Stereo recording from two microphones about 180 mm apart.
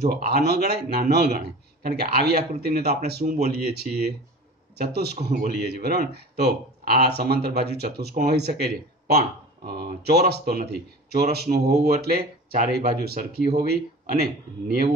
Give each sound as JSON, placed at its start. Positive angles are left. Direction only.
{"t": 0.0, "sound": "speech", "side_deg": -60}
{"t": 5.1, "sound": "speech", "side_deg": -45}
{"t": 5.7, "sound": "speech", "side_deg": -60}